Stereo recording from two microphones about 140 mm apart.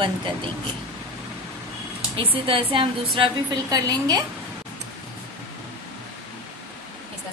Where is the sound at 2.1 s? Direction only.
40° right (ahead or behind).